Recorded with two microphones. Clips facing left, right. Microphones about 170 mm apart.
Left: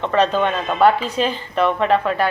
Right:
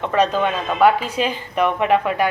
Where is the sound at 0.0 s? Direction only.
10° right (ahead or behind).